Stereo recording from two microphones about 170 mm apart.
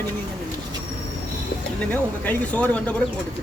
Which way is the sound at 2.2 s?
10° left (ahead or behind).